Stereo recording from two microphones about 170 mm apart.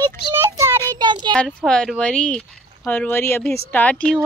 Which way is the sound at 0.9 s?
25° right (ahead or behind).